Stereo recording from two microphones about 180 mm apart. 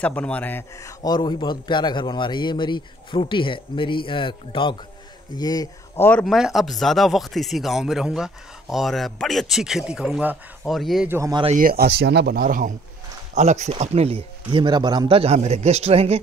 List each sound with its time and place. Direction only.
0.0 s a man's voice: 10° left (ahead or behind)
6.0 s speech: 5° left (ahead or behind)
11.1 s speech: 15° right (ahead or behind)
11.5 s speech: 55° right (ahead or behind)
13.3 s speech: 40° right (ahead or behind)